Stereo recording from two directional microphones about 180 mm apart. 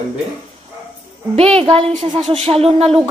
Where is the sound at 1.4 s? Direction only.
30° right (ahead or behind).